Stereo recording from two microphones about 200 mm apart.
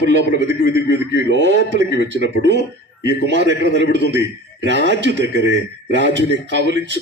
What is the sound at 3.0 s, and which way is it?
Speech, 60° right (ahead or behind).